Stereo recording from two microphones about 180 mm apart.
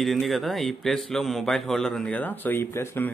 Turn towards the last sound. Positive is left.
turn(degrees=10)  # may be behind; listen again after turning